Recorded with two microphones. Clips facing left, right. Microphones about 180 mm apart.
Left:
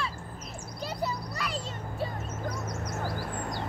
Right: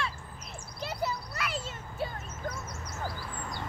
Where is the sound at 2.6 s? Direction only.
60° left (ahead or behind).